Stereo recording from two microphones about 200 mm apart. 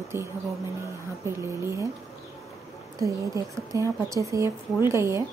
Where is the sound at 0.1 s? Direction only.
10° right (ahead or behind).